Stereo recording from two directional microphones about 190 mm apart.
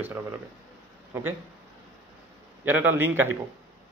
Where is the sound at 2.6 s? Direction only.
10° right (ahead or behind).